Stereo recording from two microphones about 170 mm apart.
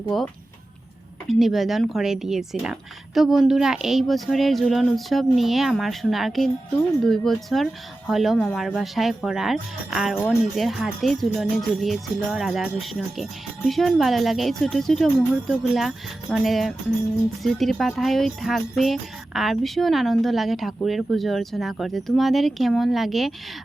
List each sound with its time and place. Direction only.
0.1 s speech: centre (ahead or behind)
1.3 s speech: centre (ahead or behind)